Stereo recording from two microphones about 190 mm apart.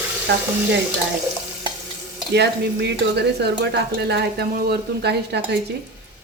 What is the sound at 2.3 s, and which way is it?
Speech, 60° right (ahead or behind).